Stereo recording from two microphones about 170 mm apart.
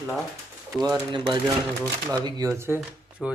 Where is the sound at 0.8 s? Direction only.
20° right (ahead or behind).